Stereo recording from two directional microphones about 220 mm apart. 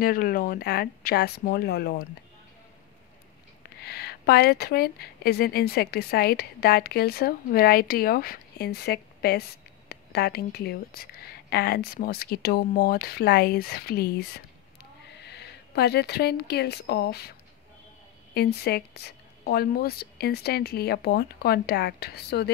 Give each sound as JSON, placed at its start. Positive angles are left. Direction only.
{"t": 0.0, "sound": "a woman's voice", "side_deg": 40}
{"t": 3.8, "sound": "a woman's voice", "side_deg": 45}
{"t": 18.3, "sound": "a woman's voice", "side_deg": 45}